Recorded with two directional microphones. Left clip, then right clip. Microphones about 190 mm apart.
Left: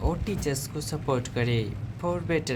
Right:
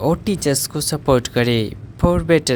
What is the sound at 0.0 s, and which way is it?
Speech, 50° right (ahead or behind).